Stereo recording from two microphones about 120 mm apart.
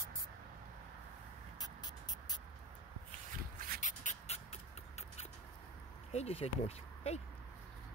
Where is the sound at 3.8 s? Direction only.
90° left; by 5.3 s 65° left (ahead or behind).